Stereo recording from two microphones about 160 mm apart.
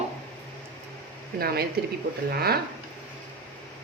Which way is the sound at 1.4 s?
75° right (ahead or behind).